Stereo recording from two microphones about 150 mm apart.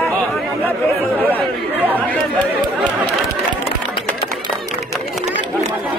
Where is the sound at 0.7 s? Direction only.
10° left (ahead or behind).